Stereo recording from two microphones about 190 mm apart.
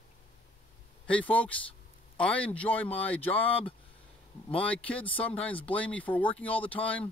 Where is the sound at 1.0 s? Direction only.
5° left (ahead or behind).